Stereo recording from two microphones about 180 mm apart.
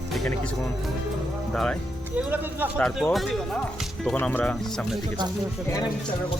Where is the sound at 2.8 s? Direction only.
Centre (ahead or behind).